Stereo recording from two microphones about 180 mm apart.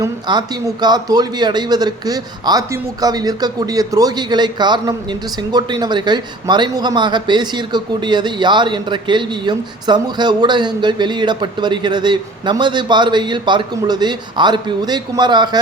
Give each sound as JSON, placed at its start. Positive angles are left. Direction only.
{"t": 0.0, "sound": "a man's voice", "side_deg": -20}